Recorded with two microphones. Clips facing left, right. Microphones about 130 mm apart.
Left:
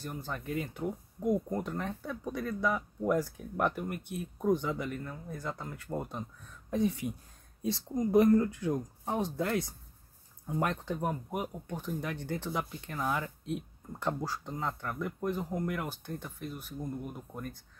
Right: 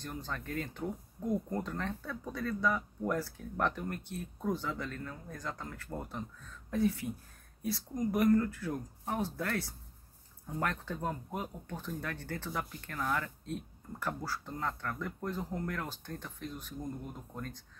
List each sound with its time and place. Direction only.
0.0 s speech: 10° left (ahead or behind)